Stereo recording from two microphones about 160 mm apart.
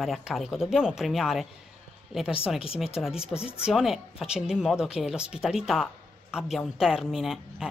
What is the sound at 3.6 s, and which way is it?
A woman's voice, 5° right (ahead or behind).